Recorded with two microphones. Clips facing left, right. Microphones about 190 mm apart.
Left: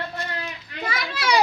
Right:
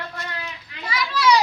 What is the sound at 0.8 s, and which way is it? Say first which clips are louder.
Speech: right 5 dB; 50° left (ahead or behind).